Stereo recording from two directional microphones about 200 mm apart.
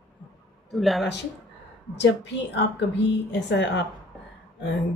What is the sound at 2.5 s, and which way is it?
Speech, 60° left (ahead or behind).